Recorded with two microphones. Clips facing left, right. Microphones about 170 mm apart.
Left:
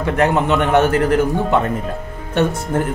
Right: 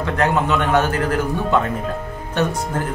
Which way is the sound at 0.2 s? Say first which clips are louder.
Left 3 dB; 25° left (ahead or behind).